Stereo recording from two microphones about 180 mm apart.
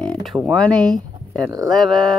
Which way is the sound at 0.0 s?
5° left (ahead or behind).